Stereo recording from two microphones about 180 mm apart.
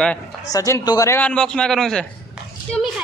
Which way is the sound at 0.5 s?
15° left (ahead or behind).